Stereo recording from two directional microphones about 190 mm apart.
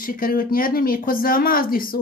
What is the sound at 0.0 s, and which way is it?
Speech, 50° left (ahead or behind).